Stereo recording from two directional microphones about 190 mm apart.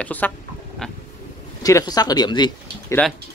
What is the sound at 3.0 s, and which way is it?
Speech, 5° left (ahead or behind).